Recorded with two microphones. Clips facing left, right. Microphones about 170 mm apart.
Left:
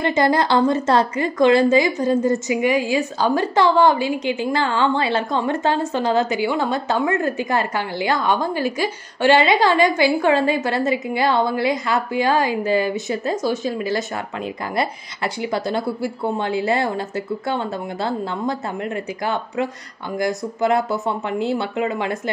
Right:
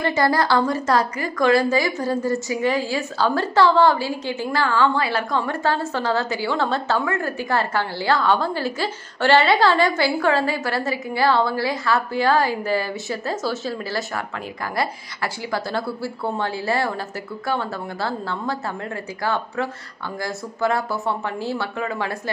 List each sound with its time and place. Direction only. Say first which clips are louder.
0.0 s a woman's voice: left 2 dB; 20° left (ahead or behind)